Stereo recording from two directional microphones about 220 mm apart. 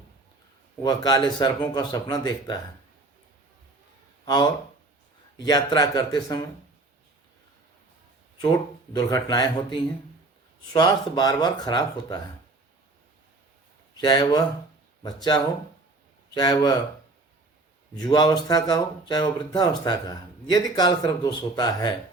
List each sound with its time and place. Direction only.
0.8 s speech: 15° left (ahead or behind)
5.5 s speech: 15° left (ahead or behind)
8.9 s speech: 15° left (ahead or behind)
13.9 s speech: 20° left (ahead or behind)
17.9 s speech: 20° left (ahead or behind)